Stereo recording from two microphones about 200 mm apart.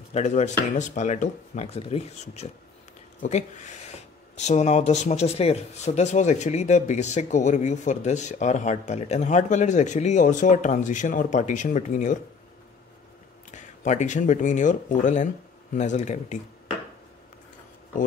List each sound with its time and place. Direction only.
0.1 s speech: 35° left (ahead or behind)
13.5 s speech: 35° left (ahead or behind)